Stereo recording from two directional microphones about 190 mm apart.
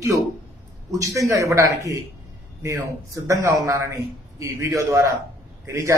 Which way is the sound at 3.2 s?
15° right (ahead or behind).